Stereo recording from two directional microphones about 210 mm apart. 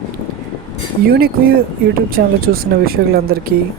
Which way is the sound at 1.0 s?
45° right (ahead or behind).